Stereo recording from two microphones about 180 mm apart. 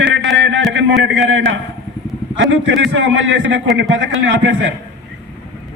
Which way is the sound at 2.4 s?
90° right.